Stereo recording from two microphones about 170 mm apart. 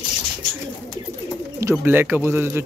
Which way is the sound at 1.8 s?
10° right (ahead or behind).